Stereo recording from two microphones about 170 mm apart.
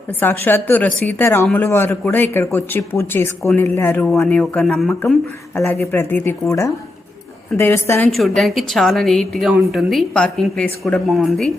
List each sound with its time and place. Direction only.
0.1 s speech: 10° left (ahead or behind)
8.1 s a woman's voice: centre (ahead or behind)